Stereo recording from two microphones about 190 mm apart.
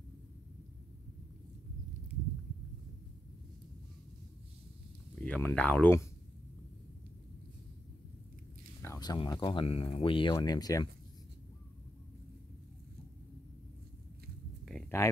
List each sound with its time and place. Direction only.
5.2 s speech: 5° left (ahead or behind)
8.8 s speech: 20° left (ahead or behind)
15.0 s speech: 15° left (ahead or behind)